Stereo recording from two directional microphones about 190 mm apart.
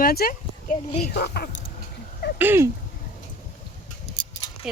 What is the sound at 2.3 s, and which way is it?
Speech, 10° right (ahead or behind).